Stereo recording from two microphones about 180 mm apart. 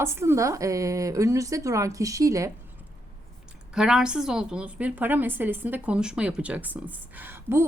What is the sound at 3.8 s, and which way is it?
A woman's voice, 5° right (ahead or behind).